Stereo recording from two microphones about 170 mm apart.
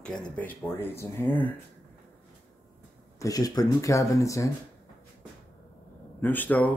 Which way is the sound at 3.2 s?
20° left (ahead or behind).